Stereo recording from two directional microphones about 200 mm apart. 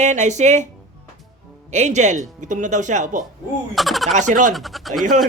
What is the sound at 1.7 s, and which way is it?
Speech, 35° right (ahead or behind).